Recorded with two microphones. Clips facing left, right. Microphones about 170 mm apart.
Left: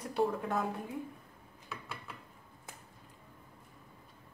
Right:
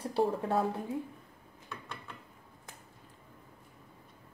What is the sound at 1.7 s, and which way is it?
Mechanisms, 5° left (ahead or behind).